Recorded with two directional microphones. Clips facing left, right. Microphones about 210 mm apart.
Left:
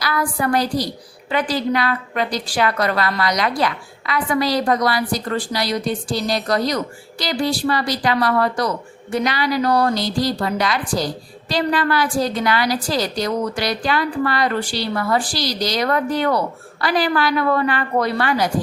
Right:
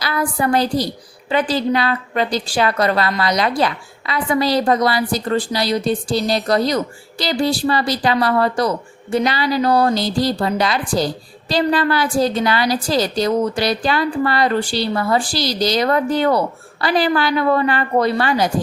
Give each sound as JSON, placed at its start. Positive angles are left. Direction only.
{"t": 0.0, "sound": "a woman's voice", "side_deg": -25}